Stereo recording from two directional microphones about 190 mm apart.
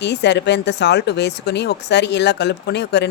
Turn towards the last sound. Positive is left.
turn(degrees=60)  # may be behind; listen again after turning